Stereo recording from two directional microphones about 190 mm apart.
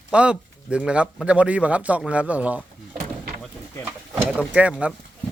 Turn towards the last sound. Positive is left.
turn(degrees=-5)  # may be behind; listen again after turning